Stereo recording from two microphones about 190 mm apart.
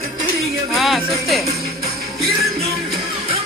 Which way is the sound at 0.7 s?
Centre (ahead or behind).